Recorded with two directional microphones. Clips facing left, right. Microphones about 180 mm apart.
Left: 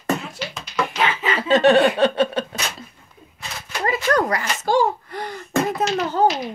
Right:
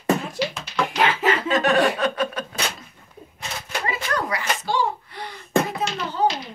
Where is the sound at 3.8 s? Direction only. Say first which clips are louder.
Left 7 dB; 45° left (ahead or behind).